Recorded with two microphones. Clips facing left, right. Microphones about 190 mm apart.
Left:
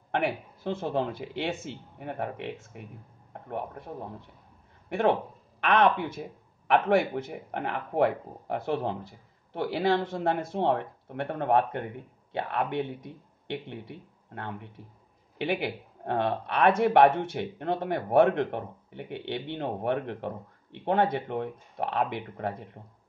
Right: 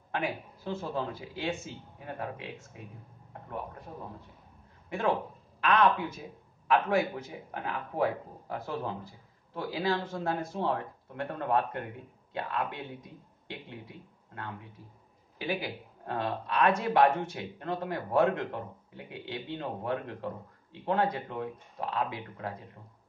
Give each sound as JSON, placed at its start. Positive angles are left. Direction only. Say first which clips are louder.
{"t": 0.1, "sound": "speech", "louder": "left 5 dB", "side_deg": 60}
{"t": 4.8, "sound": "a man's voice", "louder": "left 5 dB", "side_deg": 65}